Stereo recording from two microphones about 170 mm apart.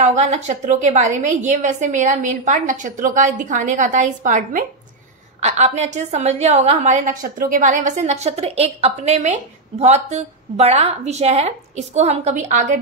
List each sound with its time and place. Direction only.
0.0 s a woman's voice: 45° right (ahead or behind)